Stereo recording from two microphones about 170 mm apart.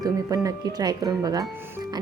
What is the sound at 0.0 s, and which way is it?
Speech, 20° right (ahead or behind).